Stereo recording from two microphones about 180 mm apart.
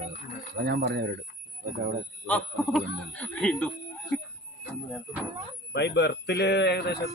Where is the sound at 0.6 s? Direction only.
65° right (ahead or behind).